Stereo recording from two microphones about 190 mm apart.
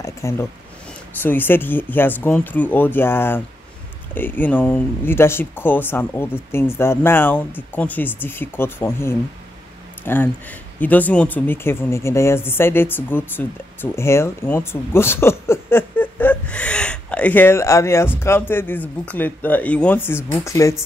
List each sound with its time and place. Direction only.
0.0 s speech: 15° left (ahead or behind)